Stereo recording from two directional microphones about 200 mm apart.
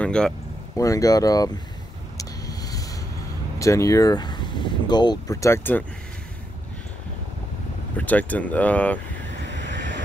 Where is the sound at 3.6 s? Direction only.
15° left (ahead or behind).